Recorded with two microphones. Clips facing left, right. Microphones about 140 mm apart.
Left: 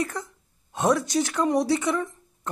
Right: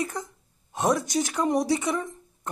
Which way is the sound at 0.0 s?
15° right (ahead or behind).